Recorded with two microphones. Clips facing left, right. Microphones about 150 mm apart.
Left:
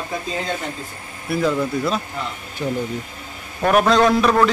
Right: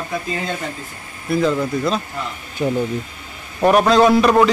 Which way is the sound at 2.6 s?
30° right (ahead or behind).